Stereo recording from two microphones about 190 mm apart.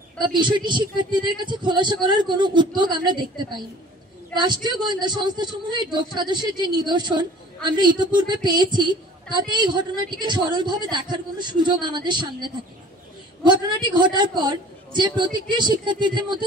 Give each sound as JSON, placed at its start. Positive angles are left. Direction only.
{"t": 0.2, "sound": "a man's voice", "side_deg": -25}